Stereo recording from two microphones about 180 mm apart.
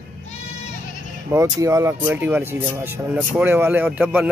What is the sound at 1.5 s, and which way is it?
Speech, 15° right (ahead or behind).